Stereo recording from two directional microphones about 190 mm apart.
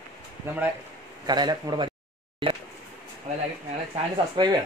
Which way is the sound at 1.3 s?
20° right (ahead or behind).